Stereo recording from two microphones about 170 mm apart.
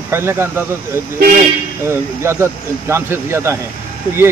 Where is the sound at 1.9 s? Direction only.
15° right (ahead or behind).